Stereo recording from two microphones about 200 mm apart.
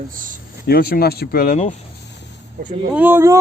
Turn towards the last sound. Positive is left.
turn(degrees=-10)  # may be behind; listen again after turning